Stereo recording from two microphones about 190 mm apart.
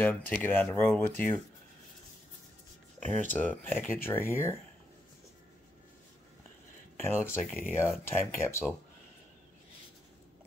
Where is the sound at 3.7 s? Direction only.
10° left (ahead or behind).